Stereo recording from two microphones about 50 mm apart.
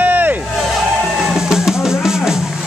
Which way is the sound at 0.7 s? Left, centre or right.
Centre.